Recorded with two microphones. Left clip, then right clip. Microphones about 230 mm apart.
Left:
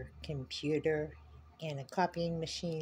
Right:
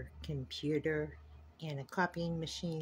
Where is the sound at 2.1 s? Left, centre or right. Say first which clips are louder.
Left 3 dB; right.